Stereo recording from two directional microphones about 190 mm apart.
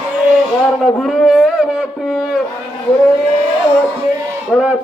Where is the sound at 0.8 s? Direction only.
Centre (ahead or behind).